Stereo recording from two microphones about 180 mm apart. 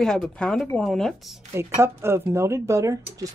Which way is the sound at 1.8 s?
15° right (ahead or behind).